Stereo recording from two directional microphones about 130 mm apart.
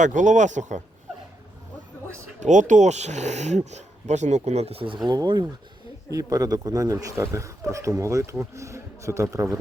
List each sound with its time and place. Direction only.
0.0 s speech: 75° right (ahead or behind)
2.4 s speech: 70° right (ahead or behind); by 4.9 s 45° right (ahead or behind)
5.0 s speech: 35° right (ahead or behind)